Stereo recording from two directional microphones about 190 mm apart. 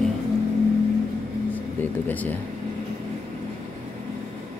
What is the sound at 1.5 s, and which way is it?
Speech, 10° left (ahead or behind).